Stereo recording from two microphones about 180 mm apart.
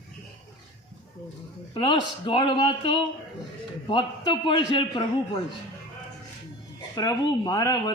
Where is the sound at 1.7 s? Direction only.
25° left (ahead or behind).